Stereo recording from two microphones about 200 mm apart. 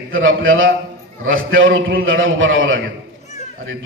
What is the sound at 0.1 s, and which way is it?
A man's voice, 85° right.